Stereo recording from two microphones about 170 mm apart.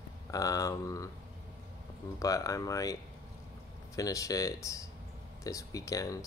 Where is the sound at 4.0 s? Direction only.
20° left (ahead or behind).